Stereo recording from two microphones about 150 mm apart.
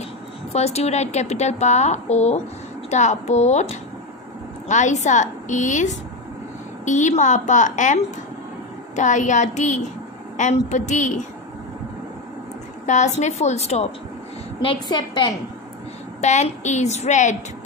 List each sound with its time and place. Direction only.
0.5 s a woman's voice: 45° left (ahead or behind)
12.8 s a woman's voice: 50° left (ahead or behind)
14.6 s a woman's voice: 35° left (ahead or behind)
16.2 s a woman's voice: 50° left (ahead or behind)